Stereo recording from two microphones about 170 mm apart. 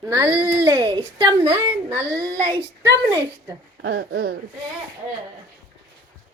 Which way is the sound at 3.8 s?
65° right (ahead or behind).